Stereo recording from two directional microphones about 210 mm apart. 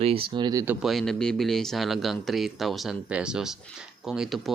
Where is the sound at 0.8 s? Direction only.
Centre (ahead or behind).